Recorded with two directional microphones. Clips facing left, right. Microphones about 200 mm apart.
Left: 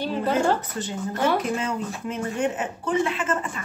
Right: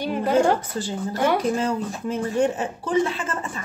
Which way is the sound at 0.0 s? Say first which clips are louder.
Right 3 dB; 15° right (ahead or behind).